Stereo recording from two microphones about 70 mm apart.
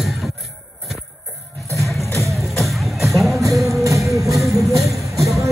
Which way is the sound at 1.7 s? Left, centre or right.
Centre.